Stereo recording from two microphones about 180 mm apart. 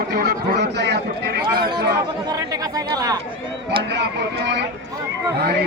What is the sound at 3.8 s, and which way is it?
Speech, 70° right (ahead or behind).